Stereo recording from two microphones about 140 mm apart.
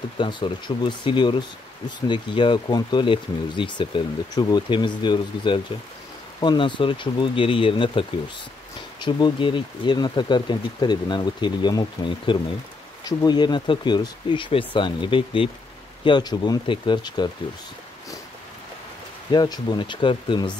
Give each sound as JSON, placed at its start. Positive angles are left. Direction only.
{"t": 0.2, "sound": "speech", "side_deg": 35}
{"t": 9.0, "sound": "speech", "side_deg": 35}
{"t": 19.3, "sound": "speech", "side_deg": 30}